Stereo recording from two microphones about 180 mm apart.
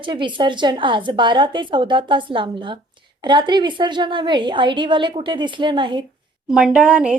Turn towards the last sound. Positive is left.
turn(degrees=-5)  # may be behind; listen again after turning